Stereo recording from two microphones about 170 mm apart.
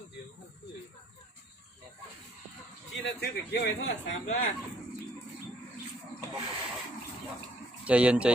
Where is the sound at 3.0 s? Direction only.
90° left.